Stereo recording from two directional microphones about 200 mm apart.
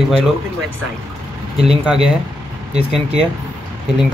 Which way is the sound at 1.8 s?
5° right (ahead or behind).